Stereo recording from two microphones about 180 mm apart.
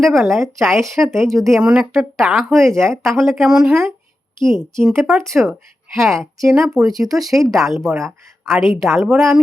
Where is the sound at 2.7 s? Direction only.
15° right (ahead or behind).